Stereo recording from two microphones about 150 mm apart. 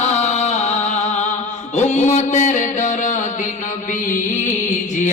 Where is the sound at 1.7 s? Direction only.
50° left (ahead or behind).